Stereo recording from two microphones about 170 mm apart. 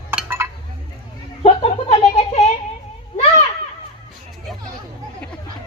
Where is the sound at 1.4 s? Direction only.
40° left (ahead or behind).